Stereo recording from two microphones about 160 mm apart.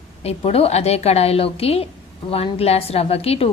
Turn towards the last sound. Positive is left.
turn(degrees=40)  # may be behind; listen again after turning